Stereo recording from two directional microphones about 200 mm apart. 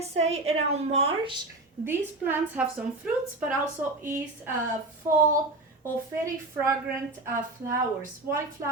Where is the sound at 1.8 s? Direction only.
10° right (ahead or behind).